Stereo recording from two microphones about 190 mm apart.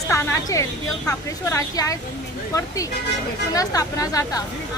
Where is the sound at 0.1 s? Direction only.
15° left (ahead or behind).